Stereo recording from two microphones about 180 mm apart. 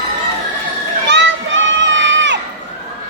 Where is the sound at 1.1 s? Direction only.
90° right.